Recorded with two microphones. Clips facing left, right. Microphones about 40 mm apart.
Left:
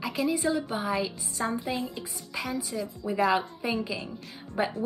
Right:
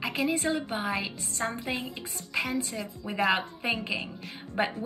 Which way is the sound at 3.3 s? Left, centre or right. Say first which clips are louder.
Left 2 dB; right.